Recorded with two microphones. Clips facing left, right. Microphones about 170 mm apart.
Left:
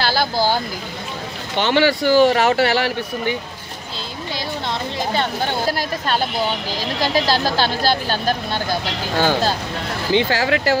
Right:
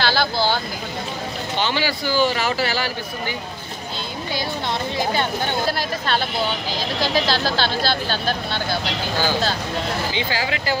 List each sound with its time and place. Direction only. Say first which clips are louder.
1.6 s speech: left 8 dB; 65° left (ahead or behind)
5.7 s speech: left 2 dB; 45° left (ahead or behind)
10.1 s speech: left 7 dB; 65° left (ahead or behind)